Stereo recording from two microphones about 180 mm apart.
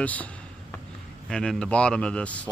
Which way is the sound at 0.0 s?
10° left (ahead or behind).